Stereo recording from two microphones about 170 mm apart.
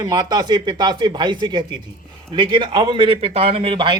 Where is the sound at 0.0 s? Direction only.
20° right (ahead or behind).